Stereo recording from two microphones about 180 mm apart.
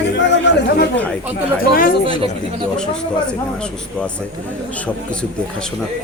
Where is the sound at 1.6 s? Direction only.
55° left (ahead or behind).